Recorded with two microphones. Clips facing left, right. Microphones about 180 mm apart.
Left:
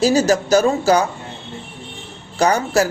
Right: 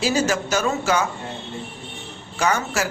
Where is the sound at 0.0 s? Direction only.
40° left (ahead or behind).